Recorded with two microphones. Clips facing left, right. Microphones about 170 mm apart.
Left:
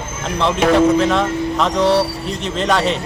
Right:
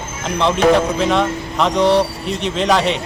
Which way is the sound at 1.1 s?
Centre (ahead or behind).